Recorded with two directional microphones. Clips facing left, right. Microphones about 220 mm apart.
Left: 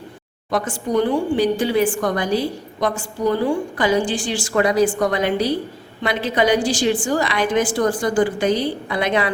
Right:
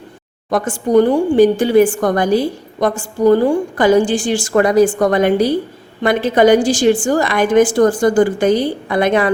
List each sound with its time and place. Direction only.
0.5 s a woman's voice: 50° right (ahead or behind)